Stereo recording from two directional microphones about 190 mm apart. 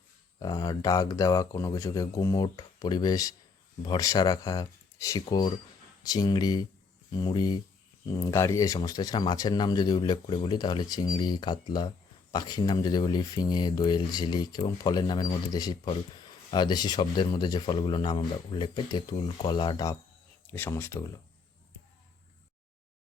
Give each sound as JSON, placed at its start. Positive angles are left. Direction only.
{"t": 0.3, "sound": "speech", "side_deg": 20}